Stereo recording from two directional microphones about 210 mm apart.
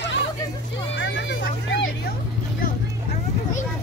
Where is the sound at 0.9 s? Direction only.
60° left (ahead or behind).